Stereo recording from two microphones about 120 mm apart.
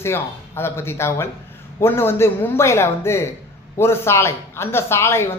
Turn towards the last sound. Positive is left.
turn(degrees=20)  # may be behind; listen again after turning